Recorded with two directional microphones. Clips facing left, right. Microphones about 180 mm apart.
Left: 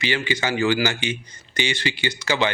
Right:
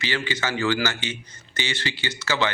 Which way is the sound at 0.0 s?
15° left (ahead or behind).